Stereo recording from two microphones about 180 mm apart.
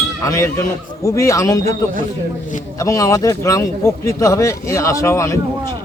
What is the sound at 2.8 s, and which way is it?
Speech, 20° left (ahead or behind).